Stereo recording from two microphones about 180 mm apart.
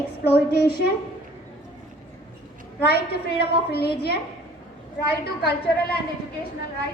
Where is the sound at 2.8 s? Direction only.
60° left (ahead or behind).